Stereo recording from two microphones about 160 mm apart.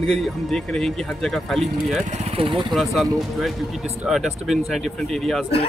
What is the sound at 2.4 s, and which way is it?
Speech, 30° right (ahead or behind).